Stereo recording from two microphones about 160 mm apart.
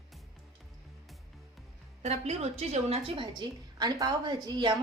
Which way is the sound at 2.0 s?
45° right (ahead or behind).